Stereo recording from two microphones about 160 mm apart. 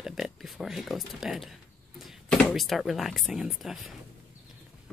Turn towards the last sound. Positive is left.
turn(degrees=0)  # may be behind; listen again after turning